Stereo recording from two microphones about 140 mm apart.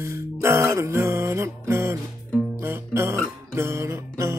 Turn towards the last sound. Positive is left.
turn(degrees=-20)  # may be behind; listen again after turning